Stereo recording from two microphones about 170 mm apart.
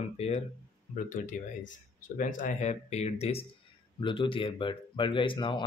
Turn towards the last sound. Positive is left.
turn(degrees=25)  # may be behind; listen again after turning